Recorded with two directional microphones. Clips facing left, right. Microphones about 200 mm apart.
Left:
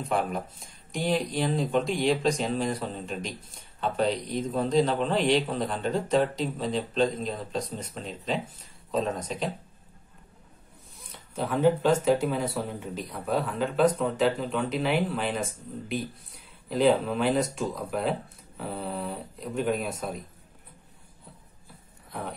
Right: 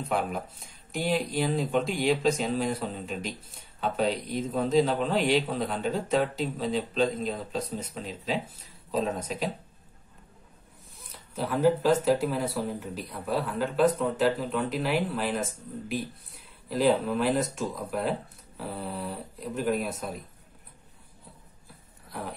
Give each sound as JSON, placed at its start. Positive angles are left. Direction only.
{"t": 0.1, "sound": "speech", "side_deg": 0}
{"t": 11.0, "sound": "speech", "side_deg": 0}